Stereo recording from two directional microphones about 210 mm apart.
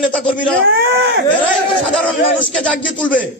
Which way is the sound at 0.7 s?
50° right (ahead or behind).